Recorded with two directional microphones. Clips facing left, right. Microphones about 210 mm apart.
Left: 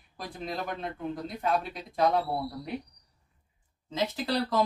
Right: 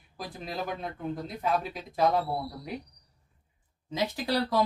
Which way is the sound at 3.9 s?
15° right (ahead or behind).